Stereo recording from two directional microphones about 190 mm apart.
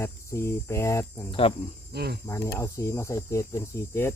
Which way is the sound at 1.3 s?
30° left (ahead or behind).